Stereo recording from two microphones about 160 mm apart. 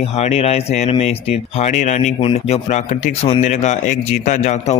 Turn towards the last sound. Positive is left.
turn(degrees=45)  # may be behind; listen again after turning